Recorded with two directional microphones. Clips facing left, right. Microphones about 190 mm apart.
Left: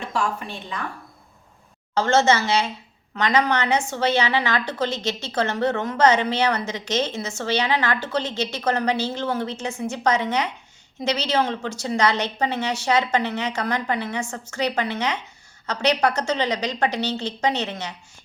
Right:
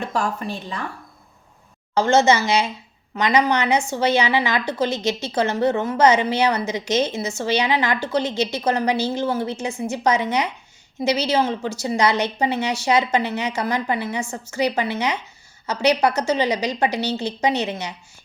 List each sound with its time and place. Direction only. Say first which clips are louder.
0.1 s a woman's voice: right 2 dB; 40° right (ahead or behind)
2.0 s a woman's voice: right 2 dB; 10° right (ahead or behind)